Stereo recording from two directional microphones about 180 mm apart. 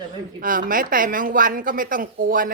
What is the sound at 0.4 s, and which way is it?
A woman's voice, 50° right (ahead or behind).